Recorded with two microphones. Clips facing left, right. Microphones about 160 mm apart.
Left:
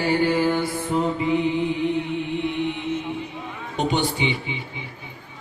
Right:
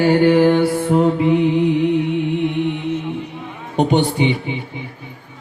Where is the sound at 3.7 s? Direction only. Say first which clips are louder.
Right 7 dB; 60° right (ahead or behind).